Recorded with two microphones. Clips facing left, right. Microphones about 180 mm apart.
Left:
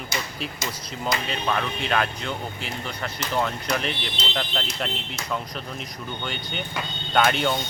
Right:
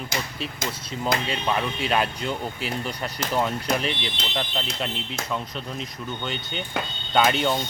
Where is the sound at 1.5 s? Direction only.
15° right (ahead or behind).